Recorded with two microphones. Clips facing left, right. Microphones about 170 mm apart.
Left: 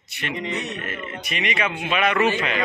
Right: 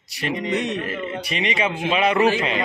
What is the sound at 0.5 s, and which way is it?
Speech, 90° right.